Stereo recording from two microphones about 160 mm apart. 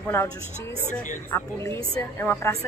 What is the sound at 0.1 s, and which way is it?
A woman's voice, 15° left (ahead or behind).